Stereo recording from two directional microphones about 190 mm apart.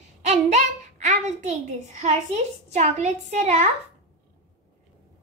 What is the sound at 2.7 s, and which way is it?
Speech, 35° right (ahead or behind).